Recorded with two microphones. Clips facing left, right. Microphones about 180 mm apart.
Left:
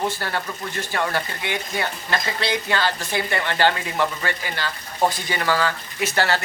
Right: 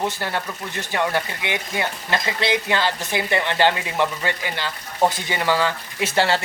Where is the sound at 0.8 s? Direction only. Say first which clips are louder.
Right 2 dB; 20° right (ahead or behind).